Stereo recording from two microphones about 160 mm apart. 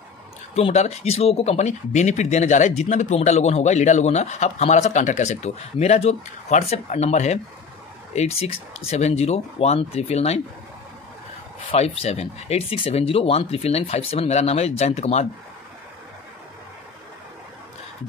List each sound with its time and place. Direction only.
0.6 s speech: 40° left (ahead or behind)
11.7 s speech: 40° left (ahead or behind)